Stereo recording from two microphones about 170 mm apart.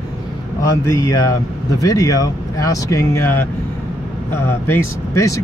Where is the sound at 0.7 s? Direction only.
15° left (ahead or behind).